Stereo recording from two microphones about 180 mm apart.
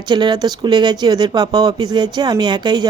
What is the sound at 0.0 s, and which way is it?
Speech, 25° right (ahead or behind).